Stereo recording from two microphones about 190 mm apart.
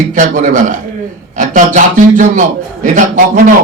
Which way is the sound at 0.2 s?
40° right (ahead or behind).